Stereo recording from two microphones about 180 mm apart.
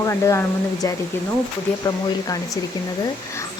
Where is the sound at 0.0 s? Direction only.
15° left (ahead or behind).